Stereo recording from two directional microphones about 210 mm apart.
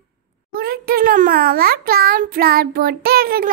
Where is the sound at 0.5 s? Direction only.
45° right (ahead or behind).